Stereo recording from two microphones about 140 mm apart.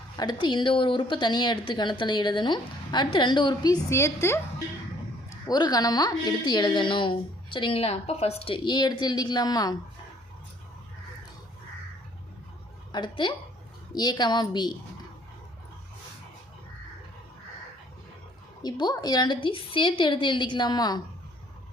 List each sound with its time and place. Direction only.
0.2 s speech: 30° left (ahead or behind)
5.5 s speech: 30° left (ahead or behind)
12.9 s a woman's voice: 35° left (ahead or behind)
18.6 s speech: 30° left (ahead or behind)